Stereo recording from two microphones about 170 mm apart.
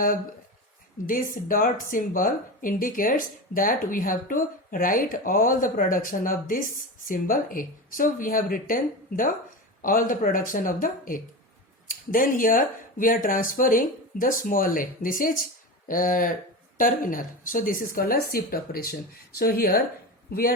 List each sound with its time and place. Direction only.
1.0 s speech: 55° left (ahead or behind)